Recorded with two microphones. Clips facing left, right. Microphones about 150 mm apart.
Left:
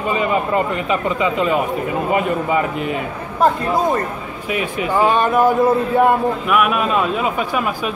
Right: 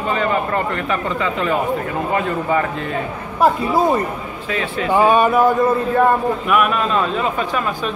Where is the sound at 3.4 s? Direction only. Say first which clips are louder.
Right 1 dB; 10° right (ahead or behind).